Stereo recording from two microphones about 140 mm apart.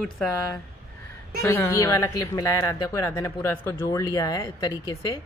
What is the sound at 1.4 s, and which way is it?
A woman's voice, 20° left (ahead or behind).